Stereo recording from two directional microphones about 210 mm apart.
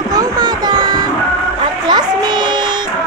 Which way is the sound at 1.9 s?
20° right (ahead or behind).